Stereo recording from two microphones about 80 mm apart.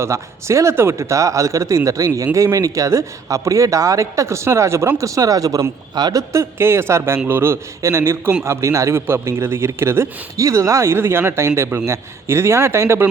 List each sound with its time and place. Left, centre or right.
0.0 s a man's voice: right
6.3 s speech: right
10.9 s speech: right